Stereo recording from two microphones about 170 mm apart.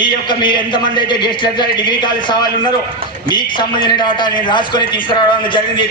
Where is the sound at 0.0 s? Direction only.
25° left (ahead or behind).